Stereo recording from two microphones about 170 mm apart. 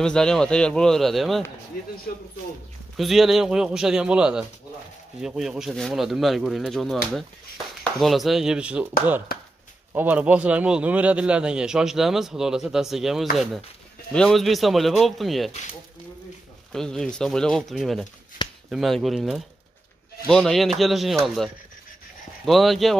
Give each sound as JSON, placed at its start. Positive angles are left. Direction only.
{"t": 0.0, "sound": "a man's voice", "side_deg": 5}
{"t": 3.0, "sound": "a man's voice", "side_deg": 0}
{"t": 9.9, "sound": "a man's voice", "side_deg": -10}
{"t": 16.7, "sound": "a man's voice", "side_deg": 5}
{"t": 22.4, "sound": "a man's voice", "side_deg": 0}